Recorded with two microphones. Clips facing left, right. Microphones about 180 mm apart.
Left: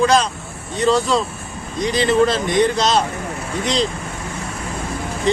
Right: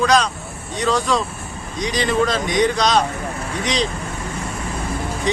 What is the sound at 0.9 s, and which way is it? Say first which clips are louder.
Speech: left 3 dB; 25° left (ahead or behind).